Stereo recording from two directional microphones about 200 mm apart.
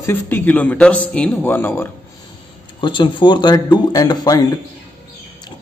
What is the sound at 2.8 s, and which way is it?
Speech, 25° left (ahead or behind).